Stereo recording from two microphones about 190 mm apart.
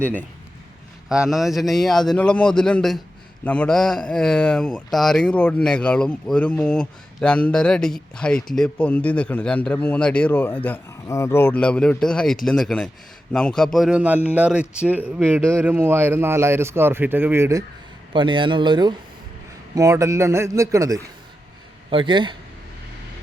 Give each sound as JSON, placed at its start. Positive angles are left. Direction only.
{"t": 0.0, "sound": "speech", "side_deg": 10}
{"t": 1.3, "sound": "speech", "side_deg": 0}
{"t": 18.1, "sound": "speech", "side_deg": -25}